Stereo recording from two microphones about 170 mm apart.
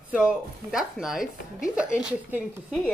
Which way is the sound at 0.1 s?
5° right (ahead or behind).